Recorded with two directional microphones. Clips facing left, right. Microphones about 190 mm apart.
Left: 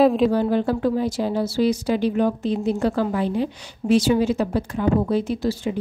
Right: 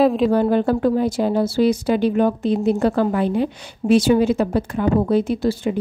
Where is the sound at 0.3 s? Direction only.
55° right (ahead or behind).